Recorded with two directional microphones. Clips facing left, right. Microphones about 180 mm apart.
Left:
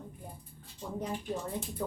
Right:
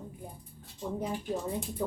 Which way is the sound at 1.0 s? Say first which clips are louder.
Right 1 dB; 10° right (ahead or behind).